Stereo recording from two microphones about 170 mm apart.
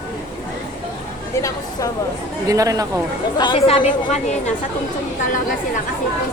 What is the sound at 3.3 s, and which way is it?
A woman's voice, 30° left (ahead or behind).